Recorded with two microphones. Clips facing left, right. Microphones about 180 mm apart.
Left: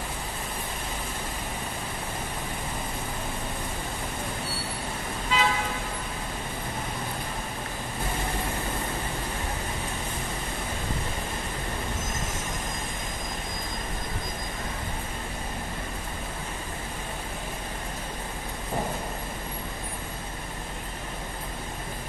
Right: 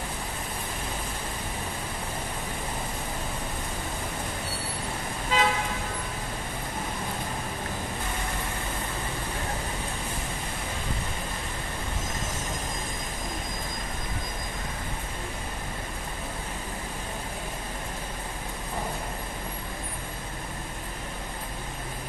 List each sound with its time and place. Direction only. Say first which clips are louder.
5.3 s toot: right 1 dB; 45° right (ahead or behind)